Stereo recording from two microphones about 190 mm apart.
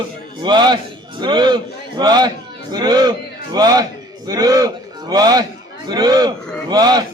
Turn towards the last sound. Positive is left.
turn(degrees=-20)  # may be behind; listen again after turning